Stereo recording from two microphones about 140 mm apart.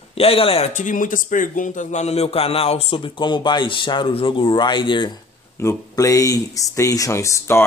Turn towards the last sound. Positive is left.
turn(degrees=20)  # may be behind; listen again after turning